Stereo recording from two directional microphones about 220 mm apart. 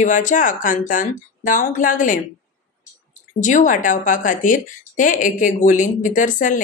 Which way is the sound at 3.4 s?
35° left (ahead or behind).